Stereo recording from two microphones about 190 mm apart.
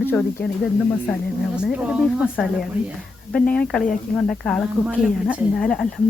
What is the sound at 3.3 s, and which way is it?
Speech, 5° left (ahead or behind).